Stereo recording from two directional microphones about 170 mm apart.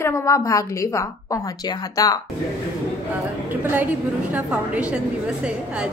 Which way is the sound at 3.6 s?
10° right (ahead or behind).